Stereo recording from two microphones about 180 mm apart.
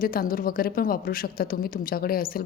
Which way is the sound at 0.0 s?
55° left (ahead or behind).